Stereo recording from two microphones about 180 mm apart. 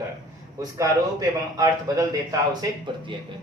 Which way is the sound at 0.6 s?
20° right (ahead or behind).